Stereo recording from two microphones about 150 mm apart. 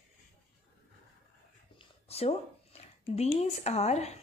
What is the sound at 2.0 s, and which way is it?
Speech, 45° left (ahead or behind).